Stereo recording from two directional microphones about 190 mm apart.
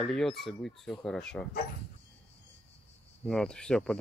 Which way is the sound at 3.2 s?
5° left (ahead or behind).